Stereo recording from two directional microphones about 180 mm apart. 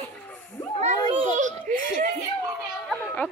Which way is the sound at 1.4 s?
45° right (ahead or behind).